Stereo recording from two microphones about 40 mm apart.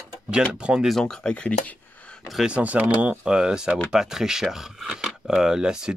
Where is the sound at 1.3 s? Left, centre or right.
Left.